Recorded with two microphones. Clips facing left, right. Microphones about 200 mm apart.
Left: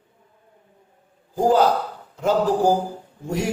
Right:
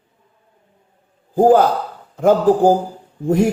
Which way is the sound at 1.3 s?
50° right (ahead or behind).